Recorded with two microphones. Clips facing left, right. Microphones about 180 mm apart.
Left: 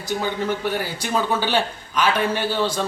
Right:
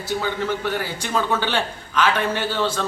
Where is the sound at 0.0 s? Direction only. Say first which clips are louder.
Even; 15° left (ahead or behind).